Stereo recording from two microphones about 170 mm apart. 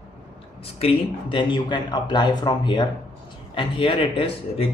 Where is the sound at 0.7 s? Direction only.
30° left (ahead or behind).